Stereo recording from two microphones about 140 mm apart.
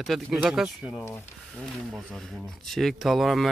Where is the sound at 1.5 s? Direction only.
5° left (ahead or behind).